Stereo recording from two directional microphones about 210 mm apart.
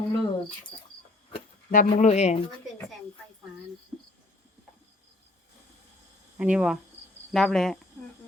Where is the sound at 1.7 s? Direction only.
35° left (ahead or behind).